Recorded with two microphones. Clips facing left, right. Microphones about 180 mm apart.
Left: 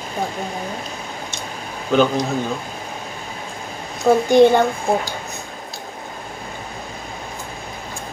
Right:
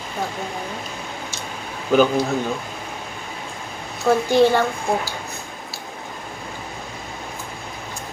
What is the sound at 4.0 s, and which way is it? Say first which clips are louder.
Speech: left 4 dB; 20° left (ahead or behind).